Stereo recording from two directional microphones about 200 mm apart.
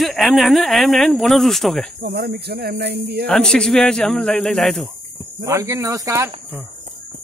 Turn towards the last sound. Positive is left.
turn(degrees=-15)  # may be behind; listen again after turning